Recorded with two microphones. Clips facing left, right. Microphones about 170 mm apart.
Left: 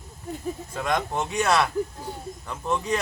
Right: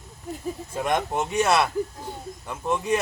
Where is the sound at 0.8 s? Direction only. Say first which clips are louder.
Right 2 dB; 20° right (ahead or behind).